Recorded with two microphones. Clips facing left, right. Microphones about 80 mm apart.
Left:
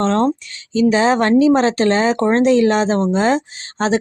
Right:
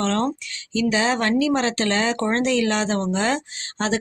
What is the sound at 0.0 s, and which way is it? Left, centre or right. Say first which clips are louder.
Speech: left 6 dB; left.